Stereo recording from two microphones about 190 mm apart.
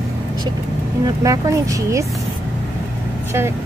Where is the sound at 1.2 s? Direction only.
15° right (ahead or behind).